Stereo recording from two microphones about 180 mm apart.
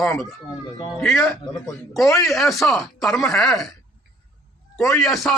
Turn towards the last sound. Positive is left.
turn(degrees=0)  # may be behind; listen again after turning